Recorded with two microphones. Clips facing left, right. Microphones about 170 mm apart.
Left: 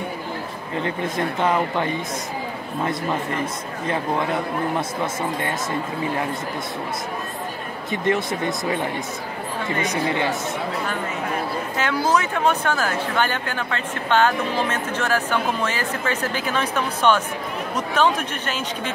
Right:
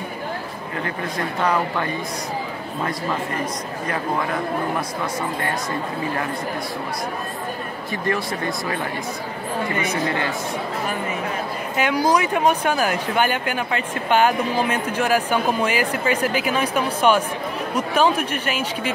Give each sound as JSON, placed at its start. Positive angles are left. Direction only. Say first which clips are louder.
{"t": 0.8, "sound": "speech", "louder": "left 3 dB", "side_deg": 20}
{"t": 4.7, "sound": "speech", "louder": "left 1 dB", "side_deg": 25}
{"t": 7.9, "sound": "speech", "louder": "left 3 dB", "side_deg": 20}
{"t": 11.7, "sound": "speech", "louder": "right 3 dB", "side_deg": -15}